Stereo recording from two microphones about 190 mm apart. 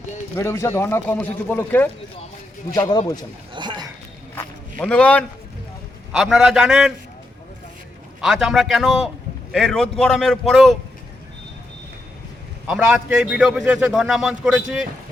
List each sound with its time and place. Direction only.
0.3 s a man's voice: 15° left (ahead or behind)
3.5 s a sound: 25° right (ahead or behind)
4.4 s a sound: 5° left (ahead or behind)
6.1 s a man's voice: centre (ahead or behind)
8.2 s a man's voice: centre (ahead or behind)
12.6 s a man's voice: 5° right (ahead or behind)